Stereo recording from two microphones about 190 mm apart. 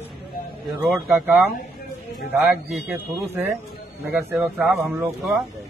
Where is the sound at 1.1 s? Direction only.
10° right (ahead or behind).